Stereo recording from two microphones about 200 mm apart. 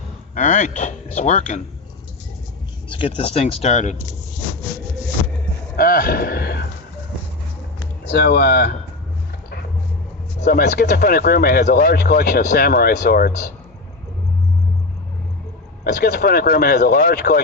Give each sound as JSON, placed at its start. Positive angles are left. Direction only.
{"t": 0.3, "sound": "speech", "side_deg": 40}
{"t": 3.2, "sound": "speech", "side_deg": 30}
{"t": 5.7, "sound": "a man's voice", "side_deg": 45}
{"t": 8.0, "sound": "speech", "side_deg": 55}
{"t": 10.4, "sound": "speech", "side_deg": 55}
{"t": 15.8, "sound": "speech", "side_deg": 55}